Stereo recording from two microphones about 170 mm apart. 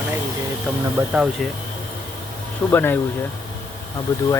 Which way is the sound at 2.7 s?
10° left (ahead or behind).